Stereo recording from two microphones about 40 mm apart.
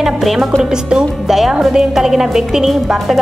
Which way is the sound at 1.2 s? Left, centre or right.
Centre.